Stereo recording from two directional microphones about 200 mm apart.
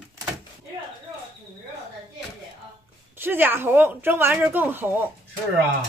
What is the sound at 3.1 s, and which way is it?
A woman's voice, 10° right (ahead or behind).